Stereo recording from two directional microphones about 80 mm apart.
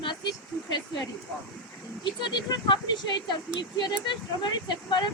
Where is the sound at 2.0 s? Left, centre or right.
Left.